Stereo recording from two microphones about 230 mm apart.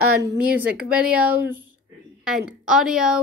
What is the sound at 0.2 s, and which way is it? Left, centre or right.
Speech, centre.